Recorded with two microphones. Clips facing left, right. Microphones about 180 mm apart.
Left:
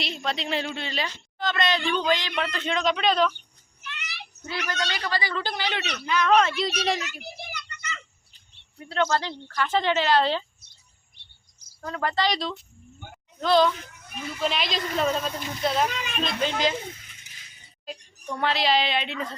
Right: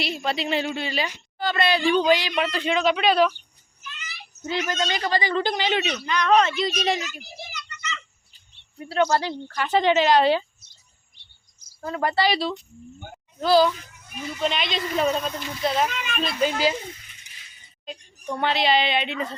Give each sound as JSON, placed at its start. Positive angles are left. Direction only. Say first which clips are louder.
{"t": 0.0, "sound": "a woman's voice", "louder": "right 4 dB", "side_deg": -5}
{"t": 3.8, "sound": "a sound", "louder": "left 1 dB", "side_deg": 65}
{"t": 4.7, "sound": "a woman's voice", "louder": "right 3 dB", "side_deg": -20}
{"t": 6.1, "sound": "speech", "louder": "right 1 dB", "side_deg": 0}
{"t": 7.0, "sound": "a sound", "louder": "right 1 dB", "side_deg": 60}
{"t": 8.8, "sound": "a woman's voice", "louder": "right 3 dB", "side_deg": -10}
{"t": 11.8, "sound": "a woman's voice", "louder": "right 3 dB", "side_deg": -10}
{"t": 17.8, "sound": "speech", "louder": "right 3 dB", "side_deg": 0}